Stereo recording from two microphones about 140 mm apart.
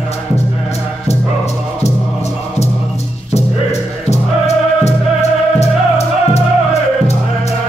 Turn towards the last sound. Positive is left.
turn(degrees=50)  # may be behind; listen again after turning